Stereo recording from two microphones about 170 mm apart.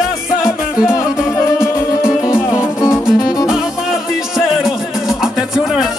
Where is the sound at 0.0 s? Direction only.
5° right (ahead or behind).